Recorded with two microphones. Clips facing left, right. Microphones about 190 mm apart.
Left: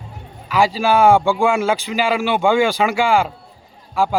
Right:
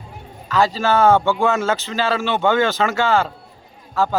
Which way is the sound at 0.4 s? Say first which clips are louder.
Left 1 dB; 10° left (ahead or behind).